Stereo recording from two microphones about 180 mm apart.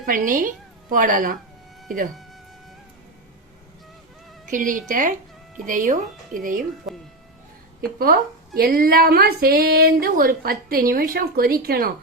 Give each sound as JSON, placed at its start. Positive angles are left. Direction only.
{"t": 0.0, "sound": "a woman's voice", "side_deg": -50}
{"t": 4.4, "sound": "speech", "side_deg": -45}
{"t": 7.8, "sound": "a woman's voice", "side_deg": -55}